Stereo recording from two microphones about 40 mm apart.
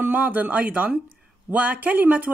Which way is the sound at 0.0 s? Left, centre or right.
Right.